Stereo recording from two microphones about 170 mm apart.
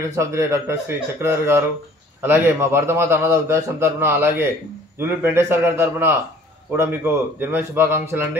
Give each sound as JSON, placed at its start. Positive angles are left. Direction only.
{"t": 0.1, "sound": "a man's voice", "side_deg": -15}